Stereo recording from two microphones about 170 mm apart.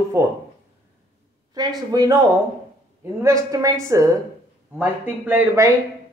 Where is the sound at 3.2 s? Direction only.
20° right (ahead or behind).